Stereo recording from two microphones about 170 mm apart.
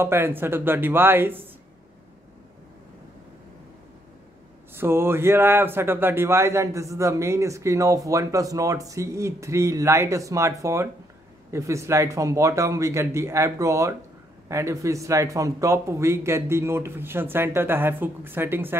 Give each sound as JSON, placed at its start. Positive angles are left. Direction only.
{"t": 0.0, "sound": "speech", "side_deg": -15}
{"t": 4.7, "sound": "speech", "side_deg": -15}